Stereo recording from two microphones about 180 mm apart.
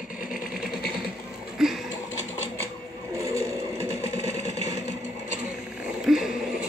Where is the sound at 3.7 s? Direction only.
35° left (ahead or behind).